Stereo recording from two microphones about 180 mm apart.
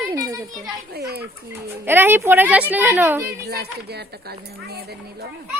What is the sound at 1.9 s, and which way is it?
Speech, 10° right (ahead or behind).